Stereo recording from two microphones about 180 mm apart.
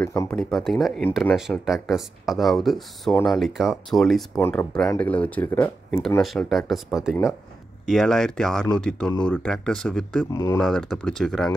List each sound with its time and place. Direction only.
0.0 s speech: 15° left (ahead or behind)
0.4 s speech: centre (ahead or behind)
4.4 s speech: 10° left (ahead or behind)
10.3 s speech: 20° left (ahead or behind)
10.6 s speech: 5° left (ahead or behind)